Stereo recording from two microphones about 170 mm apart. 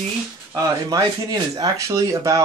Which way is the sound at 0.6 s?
20° right (ahead or behind).